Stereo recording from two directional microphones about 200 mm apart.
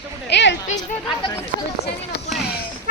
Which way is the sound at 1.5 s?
40° right (ahead or behind).